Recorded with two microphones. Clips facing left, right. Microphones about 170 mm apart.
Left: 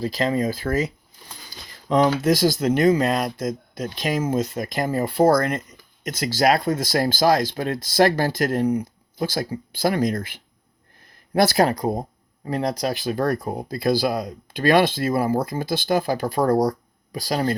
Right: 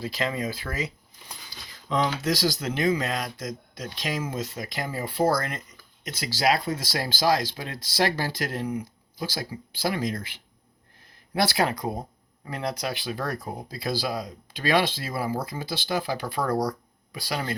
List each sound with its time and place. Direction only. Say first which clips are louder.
0.0 s speech: left 7 dB; 40° left (ahead or behind)
1.9 s speech: left 7 dB; 45° left (ahead or behind)